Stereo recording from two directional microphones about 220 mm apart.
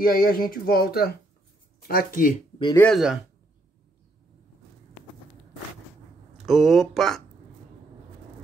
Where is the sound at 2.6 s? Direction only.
10° left (ahead or behind).